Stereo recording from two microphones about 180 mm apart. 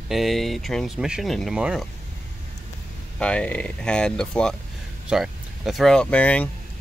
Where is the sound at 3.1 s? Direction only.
5° left (ahead or behind).